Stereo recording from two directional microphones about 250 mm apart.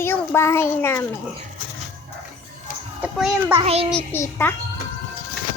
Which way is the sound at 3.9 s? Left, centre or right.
Centre.